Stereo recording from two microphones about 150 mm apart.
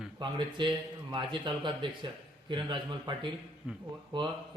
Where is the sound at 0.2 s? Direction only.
30° right (ahead or behind).